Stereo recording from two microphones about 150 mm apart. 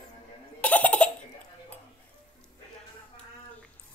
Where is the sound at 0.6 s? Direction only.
10° left (ahead or behind).